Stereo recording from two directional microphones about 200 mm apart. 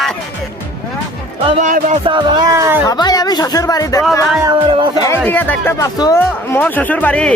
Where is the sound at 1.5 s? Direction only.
35° right (ahead or behind).